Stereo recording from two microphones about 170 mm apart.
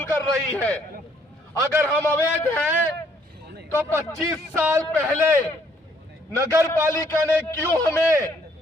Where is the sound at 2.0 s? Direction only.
10° left (ahead or behind).